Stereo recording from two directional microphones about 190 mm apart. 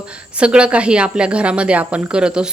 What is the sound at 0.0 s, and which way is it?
Speech, 5° right (ahead or behind).